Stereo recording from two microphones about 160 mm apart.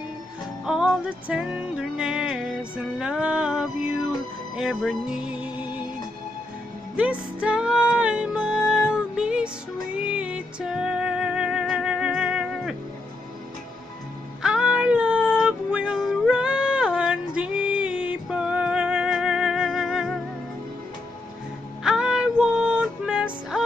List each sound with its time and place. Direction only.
0.7 s music: 5° right (ahead or behind)
7.0 s music: 5° right (ahead or behind)
14.4 s female singing: 5° right (ahead or behind)
21.8 s music: 5° right (ahead or behind)